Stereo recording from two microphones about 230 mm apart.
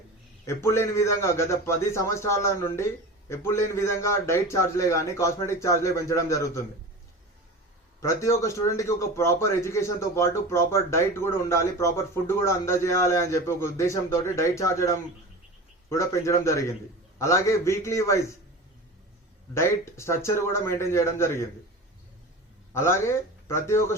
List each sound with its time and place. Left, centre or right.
0.4 s a man's voice: centre
8.0 s a man's voice: centre
19.5 s a man's voice: centre
22.7 s a man's voice: centre